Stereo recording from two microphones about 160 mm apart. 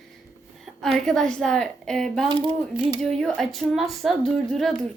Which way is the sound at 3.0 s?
Centre (ahead or behind).